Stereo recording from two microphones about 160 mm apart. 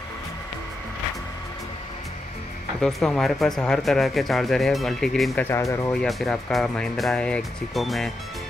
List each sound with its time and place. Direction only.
2.8 s speech: 5° left (ahead or behind)
5.4 s speech: 20° left (ahead or behind)
5.9 s speech: centre (ahead or behind)